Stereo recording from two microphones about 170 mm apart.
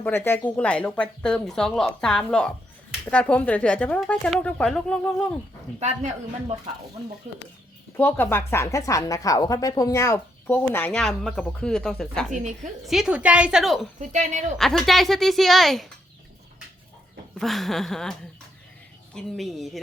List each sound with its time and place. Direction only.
0.0 s a woman's voice: 10° left (ahead or behind)
7.3 s a woman's voice: 45° right (ahead or behind)
7.9 s a woman's voice: 10° left (ahead or behind)
12.3 s a woman's voice: 45° right (ahead or behind)
12.9 s a woman's voice: 5° right (ahead or behind)
14.0 s a woman's voice: 45° right (ahead or behind)
14.6 s a woman's voice: centre (ahead or behind)
17.3 s a woman's voice: centre (ahead or behind)
19.1 s a woman's voice: centre (ahead or behind)